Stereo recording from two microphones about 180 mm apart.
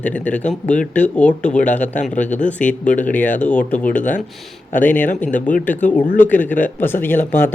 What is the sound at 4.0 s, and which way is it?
Speech, 45° left (ahead or behind).